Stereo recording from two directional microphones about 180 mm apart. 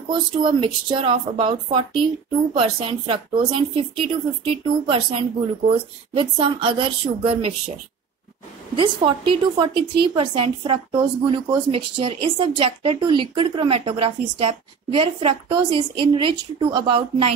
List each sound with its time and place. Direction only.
0.1 s a woman's voice: 25° right (ahead or behind)
8.7 s a woman's voice: 25° right (ahead or behind)